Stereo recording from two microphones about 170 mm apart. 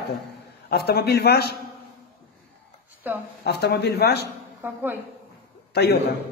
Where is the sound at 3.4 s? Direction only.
70° left (ahead or behind).